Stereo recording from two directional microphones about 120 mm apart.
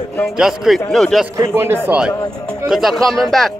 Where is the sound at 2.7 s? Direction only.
Centre (ahead or behind).